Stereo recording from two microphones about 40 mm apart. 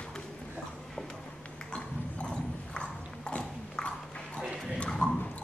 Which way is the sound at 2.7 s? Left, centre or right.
Left.